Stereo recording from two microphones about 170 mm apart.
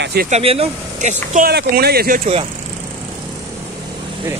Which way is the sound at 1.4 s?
70° right (ahead or behind).